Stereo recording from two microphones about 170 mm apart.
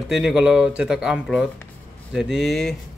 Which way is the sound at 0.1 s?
5° right (ahead or behind).